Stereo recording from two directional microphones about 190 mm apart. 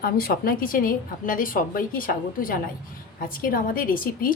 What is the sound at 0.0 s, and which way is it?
A woman's voice, 50° left (ahead or behind).